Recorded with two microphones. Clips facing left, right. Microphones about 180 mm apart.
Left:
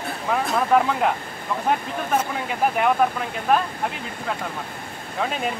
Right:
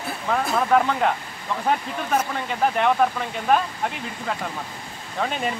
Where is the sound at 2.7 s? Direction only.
5° left (ahead or behind).